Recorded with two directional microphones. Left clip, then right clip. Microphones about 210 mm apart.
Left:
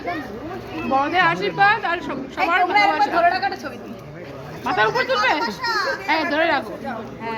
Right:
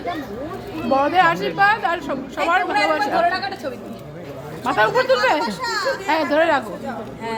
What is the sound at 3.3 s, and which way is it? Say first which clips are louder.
Speech: left 1 dB; 35° right (ahead or behind).